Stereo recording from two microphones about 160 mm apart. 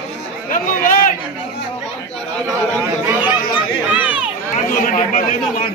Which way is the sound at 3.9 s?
10° right (ahead or behind).